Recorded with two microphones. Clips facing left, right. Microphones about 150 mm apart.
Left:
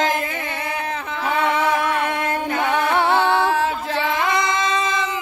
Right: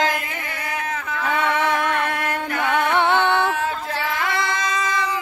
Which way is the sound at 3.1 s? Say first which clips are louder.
Left 1 dB; 30° left (ahead or behind).